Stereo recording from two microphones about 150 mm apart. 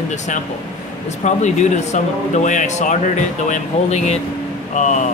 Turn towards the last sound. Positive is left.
turn(degrees=55)  # may be behind; listen again after turning